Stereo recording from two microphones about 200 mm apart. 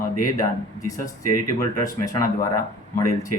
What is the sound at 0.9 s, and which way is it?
Speech, 15° left (ahead or behind).